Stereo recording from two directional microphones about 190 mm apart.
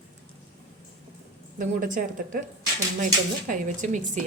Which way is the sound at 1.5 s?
45° right (ahead or behind).